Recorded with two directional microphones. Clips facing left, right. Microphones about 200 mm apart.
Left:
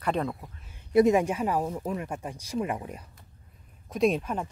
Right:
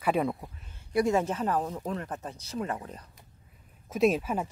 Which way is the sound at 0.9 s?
15° left (ahead or behind).